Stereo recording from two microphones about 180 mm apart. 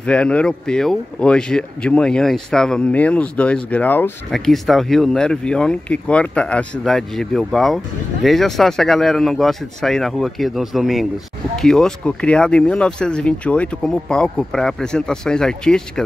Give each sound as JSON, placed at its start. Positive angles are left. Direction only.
{"t": 0.0, "sound": "speech", "side_deg": 5}